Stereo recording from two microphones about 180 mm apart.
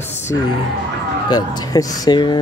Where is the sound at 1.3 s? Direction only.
20° left (ahead or behind).